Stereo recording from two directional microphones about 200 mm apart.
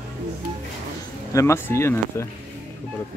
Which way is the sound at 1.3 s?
15° left (ahead or behind).